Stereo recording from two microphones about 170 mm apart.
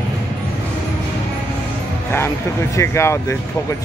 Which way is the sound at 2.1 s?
15° left (ahead or behind).